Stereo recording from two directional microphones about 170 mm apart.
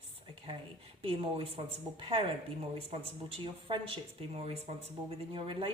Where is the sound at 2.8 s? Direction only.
35° right (ahead or behind).